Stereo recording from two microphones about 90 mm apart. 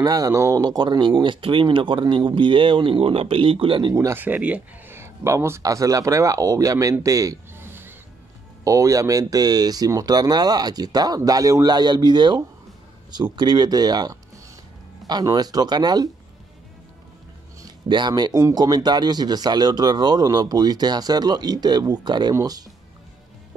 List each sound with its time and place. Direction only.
0.0 s speech: 45° right (ahead or behind)
0.7 s speech: 55° right (ahead or behind); by 3.9 s 75° right (ahead or behind)
3.9 s speech: 35° right (ahead or behind)
4.2 s speech: 15° right (ahead or behind)
4.9 s speech: 30° right (ahead or behind)
7.5 s music: 25° right (ahead or behind)
8.6 s speech: 35° right (ahead or behind)
15.3 s speech: 45° right (ahead or behind)
17.8 s speech: 55° right (ahead or behind)
22.3 s speech: 40° right (ahead or behind)